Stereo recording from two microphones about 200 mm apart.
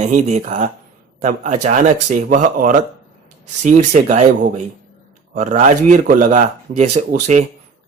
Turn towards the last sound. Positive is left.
turn(degrees=-35)  # may be behind; listen again after turning